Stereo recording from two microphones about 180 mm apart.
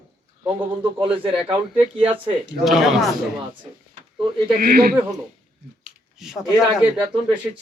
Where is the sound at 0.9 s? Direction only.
30° right (ahead or behind).